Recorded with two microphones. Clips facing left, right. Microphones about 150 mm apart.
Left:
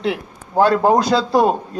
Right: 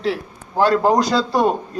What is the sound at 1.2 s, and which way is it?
Speech, 5° left (ahead or behind).